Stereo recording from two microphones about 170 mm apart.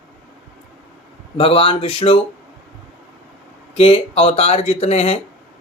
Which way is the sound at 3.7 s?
35° left (ahead or behind).